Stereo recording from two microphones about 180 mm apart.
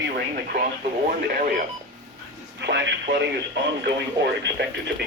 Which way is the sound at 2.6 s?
75° right (ahead or behind).